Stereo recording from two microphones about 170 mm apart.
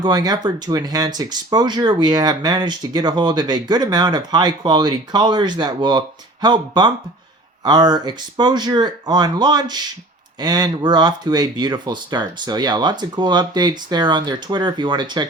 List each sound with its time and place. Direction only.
0.0 s speech: 25° right (ahead or behind)